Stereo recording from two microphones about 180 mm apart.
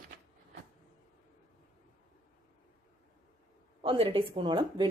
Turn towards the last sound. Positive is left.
turn(degrees=-25)  # may be behind; listen again after turning